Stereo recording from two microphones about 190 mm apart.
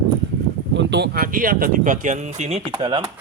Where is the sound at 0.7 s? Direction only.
60° right (ahead or behind).